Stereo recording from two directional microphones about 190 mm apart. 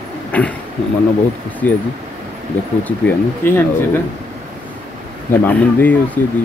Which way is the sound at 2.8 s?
10° left (ahead or behind).